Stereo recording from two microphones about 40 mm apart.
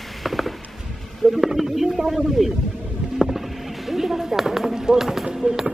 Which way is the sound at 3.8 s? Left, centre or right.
Centre.